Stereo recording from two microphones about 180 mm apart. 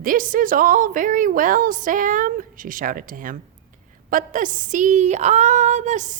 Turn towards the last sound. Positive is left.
turn(degrees=-45)  # may be behind; listen again after turning